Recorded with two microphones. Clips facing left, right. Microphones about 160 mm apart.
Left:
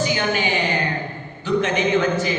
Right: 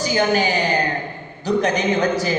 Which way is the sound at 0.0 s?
40° right (ahead or behind).